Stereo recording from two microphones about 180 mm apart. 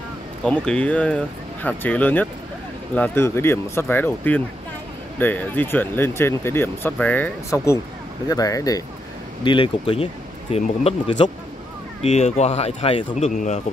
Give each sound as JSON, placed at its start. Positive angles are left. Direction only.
{"t": 0.4, "sound": "speech", "side_deg": 5}
{"t": 13.3, "sound": "speech", "side_deg": 45}